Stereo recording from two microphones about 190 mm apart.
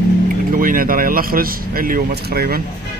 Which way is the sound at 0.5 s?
50° right (ahead or behind).